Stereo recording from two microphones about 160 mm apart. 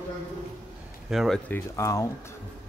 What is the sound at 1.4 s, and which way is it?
Speech, 15° left (ahead or behind).